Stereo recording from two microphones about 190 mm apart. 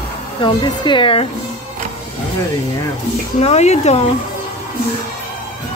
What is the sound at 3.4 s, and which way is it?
Speech, 35° left (ahead or behind).